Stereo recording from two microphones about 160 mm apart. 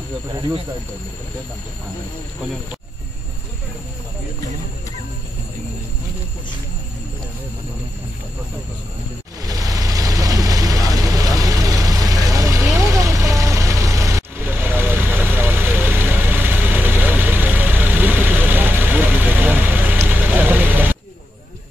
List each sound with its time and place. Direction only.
9.4 s vehicle: 20° right (ahead or behind)